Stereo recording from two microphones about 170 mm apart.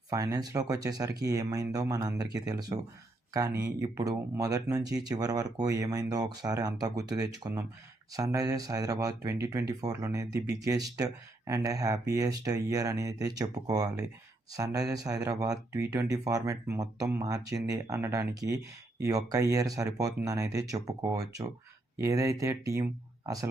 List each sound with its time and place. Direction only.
0.1 s speech: 20° right (ahead or behind)